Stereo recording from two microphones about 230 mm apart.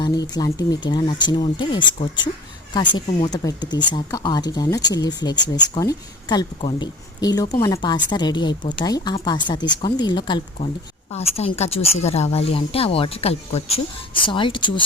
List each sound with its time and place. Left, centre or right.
0.3 s a woman's voice: centre